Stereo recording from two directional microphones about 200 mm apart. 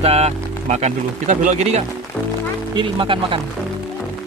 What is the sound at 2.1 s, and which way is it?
Music, 5° left (ahead or behind).